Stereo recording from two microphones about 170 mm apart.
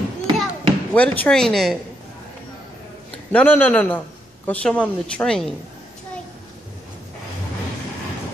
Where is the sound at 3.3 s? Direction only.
10° left (ahead or behind).